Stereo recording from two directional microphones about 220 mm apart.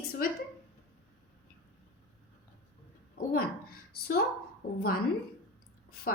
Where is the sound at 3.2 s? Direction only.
45° left (ahead or behind).